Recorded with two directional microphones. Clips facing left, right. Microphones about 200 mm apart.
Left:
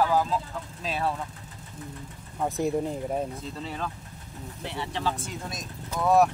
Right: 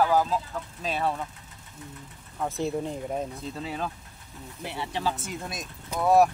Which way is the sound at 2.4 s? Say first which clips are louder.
Left 2 dB; 15° left (ahead or behind).